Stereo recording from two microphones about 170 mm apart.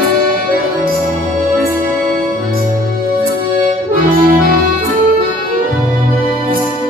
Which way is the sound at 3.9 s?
55° right (ahead or behind).